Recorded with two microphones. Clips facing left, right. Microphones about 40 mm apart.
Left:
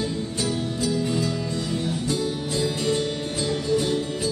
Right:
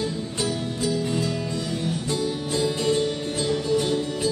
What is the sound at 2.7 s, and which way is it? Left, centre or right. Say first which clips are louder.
Music: right 1 dB; right.